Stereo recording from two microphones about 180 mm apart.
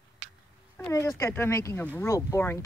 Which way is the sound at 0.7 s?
15° left (ahead or behind).